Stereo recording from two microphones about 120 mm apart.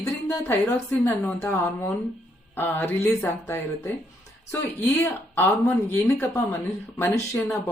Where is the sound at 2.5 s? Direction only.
15° left (ahead or behind).